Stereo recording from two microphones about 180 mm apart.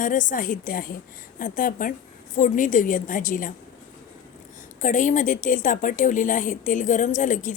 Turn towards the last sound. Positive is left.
turn(degrees=45)  # may be behind; listen again after turning